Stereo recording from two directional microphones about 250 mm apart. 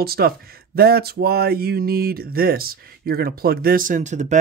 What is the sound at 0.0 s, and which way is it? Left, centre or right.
Speech, right.